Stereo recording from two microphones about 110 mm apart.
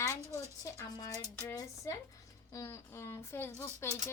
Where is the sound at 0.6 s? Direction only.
30° left (ahead or behind).